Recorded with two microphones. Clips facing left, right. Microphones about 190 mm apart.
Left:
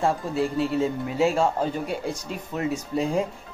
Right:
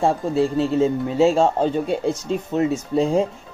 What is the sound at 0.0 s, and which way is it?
Speech, 25° right (ahead or behind).